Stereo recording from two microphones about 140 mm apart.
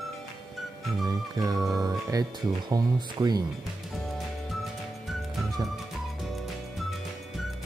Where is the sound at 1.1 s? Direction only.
25° right (ahead or behind).